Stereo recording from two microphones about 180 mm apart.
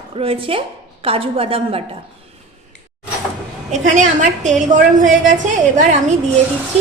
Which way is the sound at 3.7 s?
45° right (ahead or behind).